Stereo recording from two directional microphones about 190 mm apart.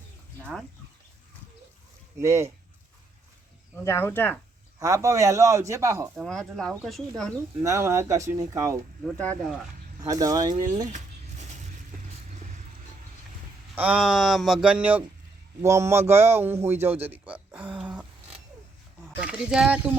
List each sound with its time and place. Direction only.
2.1 s a man's voice: 15° right (ahead or behind)
3.8 s speech: 10° left (ahead or behind)
4.8 s a man's voice: 15° right (ahead or behind)
6.1 s speech: 5° left (ahead or behind)
7.6 s a man's voice: 15° right (ahead or behind)
9.1 s speech: 5° left (ahead or behind)
10.0 s speech: 20° right (ahead or behind)
13.7 s a man's voice: 5° right (ahead or behind)
19.2 s speech: 5° right (ahead or behind)